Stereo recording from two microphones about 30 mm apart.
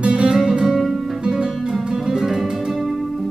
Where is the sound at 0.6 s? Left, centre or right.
Centre.